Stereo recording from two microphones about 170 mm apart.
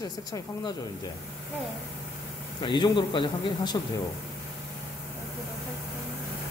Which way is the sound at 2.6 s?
25° left (ahead or behind).